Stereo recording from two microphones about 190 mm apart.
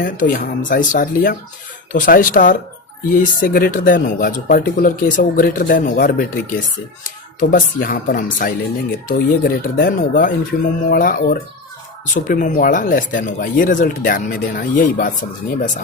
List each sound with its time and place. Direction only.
0.0 s speech: 45° left (ahead or behind)